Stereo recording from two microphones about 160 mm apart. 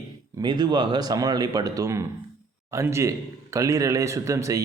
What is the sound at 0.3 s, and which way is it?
Speech, 25° right (ahead or behind).